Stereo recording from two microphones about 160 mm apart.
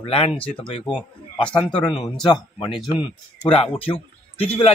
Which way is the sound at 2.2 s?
30° left (ahead or behind).